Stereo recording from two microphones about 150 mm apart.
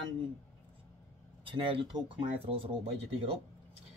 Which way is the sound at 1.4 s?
30° right (ahead or behind).